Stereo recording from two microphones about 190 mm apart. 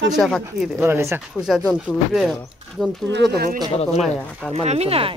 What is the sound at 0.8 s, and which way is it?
Speech, 10° right (ahead or behind).